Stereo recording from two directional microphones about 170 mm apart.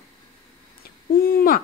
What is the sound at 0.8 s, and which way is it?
Owl, 65° left (ahead or behind).